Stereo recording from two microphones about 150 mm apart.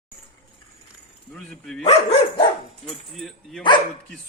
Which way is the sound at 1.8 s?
45° left (ahead or behind).